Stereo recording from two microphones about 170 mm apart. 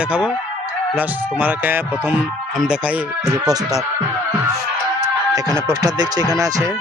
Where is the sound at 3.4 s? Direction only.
20° right (ahead or behind).